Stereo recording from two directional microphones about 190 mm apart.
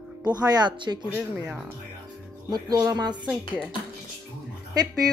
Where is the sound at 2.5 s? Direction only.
20° right (ahead or behind).